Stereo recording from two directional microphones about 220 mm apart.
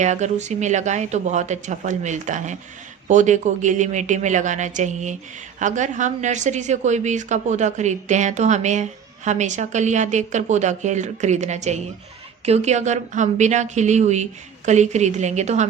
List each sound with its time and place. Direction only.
0.0 s a woman's voice: 30° right (ahead or behind)